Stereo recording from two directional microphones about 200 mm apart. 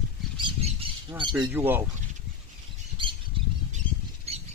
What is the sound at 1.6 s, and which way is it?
Speech, 10° right (ahead or behind).